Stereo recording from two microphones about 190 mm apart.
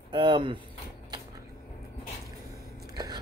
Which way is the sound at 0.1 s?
25° right (ahead or behind).